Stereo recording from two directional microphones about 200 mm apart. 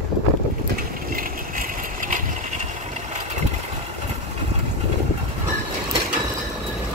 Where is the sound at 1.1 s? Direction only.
45° right (ahead or behind).